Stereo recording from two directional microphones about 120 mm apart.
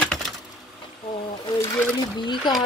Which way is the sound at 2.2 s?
40° left (ahead or behind).